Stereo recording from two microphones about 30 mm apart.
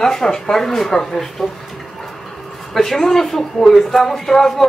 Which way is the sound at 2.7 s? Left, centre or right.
Centre.